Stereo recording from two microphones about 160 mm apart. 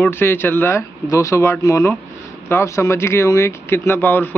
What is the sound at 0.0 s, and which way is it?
Speech, 15° left (ahead or behind).